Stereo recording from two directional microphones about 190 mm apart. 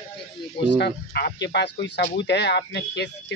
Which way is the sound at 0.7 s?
60° left (ahead or behind).